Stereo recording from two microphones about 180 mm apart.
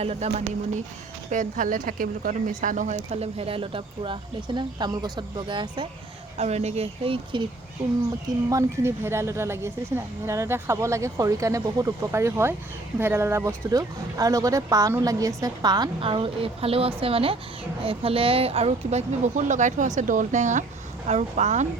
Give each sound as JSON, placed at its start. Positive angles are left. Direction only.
{"t": 0.0, "sound": "speech", "side_deg": -35}
{"t": 1.3, "sound": "speech", "side_deg": -45}
{"t": 8.4, "sound": "a woman's voice", "side_deg": -15}